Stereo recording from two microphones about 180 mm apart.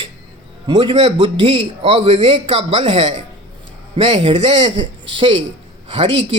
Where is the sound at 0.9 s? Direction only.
35° right (ahead or behind).